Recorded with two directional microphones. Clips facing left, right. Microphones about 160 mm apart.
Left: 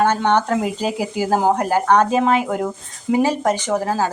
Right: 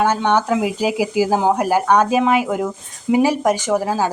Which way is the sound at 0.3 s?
5° right (ahead or behind).